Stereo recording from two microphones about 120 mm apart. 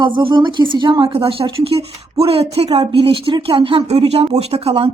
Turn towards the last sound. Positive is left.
turn(degrees=-55)  # may be behind; listen again after turning